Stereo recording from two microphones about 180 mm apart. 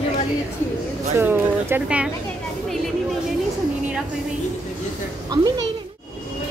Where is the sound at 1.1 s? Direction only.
10° right (ahead or behind).